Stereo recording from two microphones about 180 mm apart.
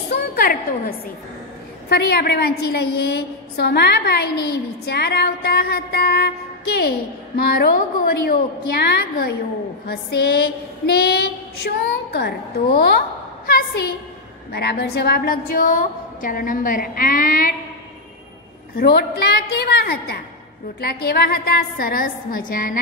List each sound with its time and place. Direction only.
0.1 s a sound: 55° left (ahead or behind)
1.9 s a woman's voice: 60° left (ahead or behind)
18.8 s a woman's voice: 60° left (ahead or behind)